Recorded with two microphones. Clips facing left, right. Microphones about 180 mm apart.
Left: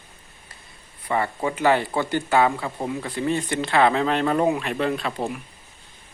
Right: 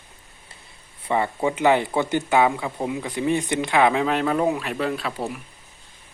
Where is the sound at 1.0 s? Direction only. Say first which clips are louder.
Right 2 dB; 20° right (ahead or behind).